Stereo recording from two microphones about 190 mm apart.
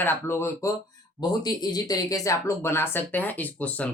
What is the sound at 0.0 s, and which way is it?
Speech, 10° left (ahead or behind).